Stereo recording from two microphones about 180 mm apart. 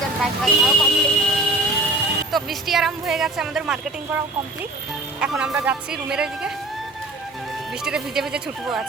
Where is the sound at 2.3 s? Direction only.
Centre (ahead or behind).